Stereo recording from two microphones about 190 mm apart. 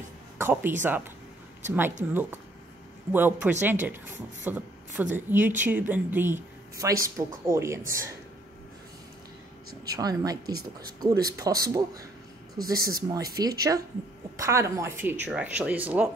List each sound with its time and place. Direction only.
0.4 s speech: 10° right (ahead or behind)
3.1 s speech: 10° right (ahead or behind)
9.9 s speech: 20° right (ahead or behind)
12.5 s speech: 50° right (ahead or behind)
13.1 s speech: 20° right (ahead or behind)